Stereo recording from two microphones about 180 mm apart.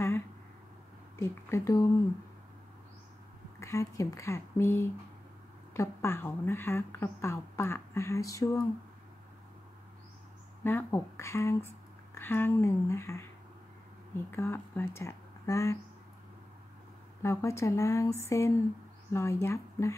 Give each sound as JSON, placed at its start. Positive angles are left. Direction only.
{"t": 1.1, "sound": "speech", "side_deg": 15}
{"t": 3.5, "sound": "speech", "side_deg": 15}
{"t": 10.6, "sound": "speech", "side_deg": 10}
{"t": 14.3, "sound": "speech", "side_deg": 15}
{"t": 17.2, "sound": "speech", "side_deg": 15}